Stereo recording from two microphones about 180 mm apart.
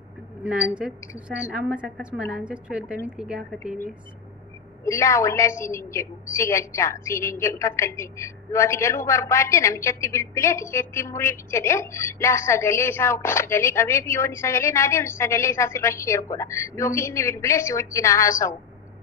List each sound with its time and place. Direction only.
0.4 s a woman's voice: 5° right (ahead or behind)
4.8 s a woman's voice: 15° left (ahead or behind)